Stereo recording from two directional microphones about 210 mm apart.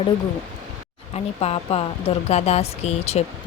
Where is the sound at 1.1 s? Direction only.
30° left (ahead or behind).